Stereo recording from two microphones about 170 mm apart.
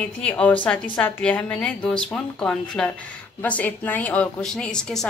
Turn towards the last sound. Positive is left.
turn(degrees=5)  # may be behind; listen again after turning